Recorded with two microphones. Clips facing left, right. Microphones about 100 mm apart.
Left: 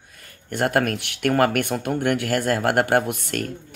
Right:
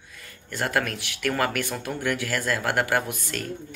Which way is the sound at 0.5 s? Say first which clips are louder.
Left 5 dB; 50° left (ahead or behind).